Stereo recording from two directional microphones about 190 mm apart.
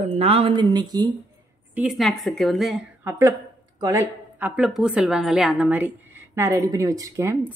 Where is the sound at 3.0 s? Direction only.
15° right (ahead or behind).